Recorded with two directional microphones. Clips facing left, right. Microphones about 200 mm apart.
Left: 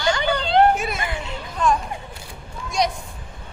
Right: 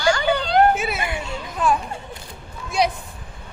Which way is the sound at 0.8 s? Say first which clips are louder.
Right 1 dB; 5° right (ahead or behind).